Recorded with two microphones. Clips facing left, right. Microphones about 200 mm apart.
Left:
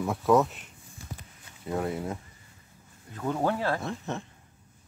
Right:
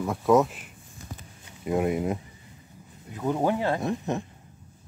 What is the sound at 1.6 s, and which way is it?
Speech, 15° right (ahead or behind).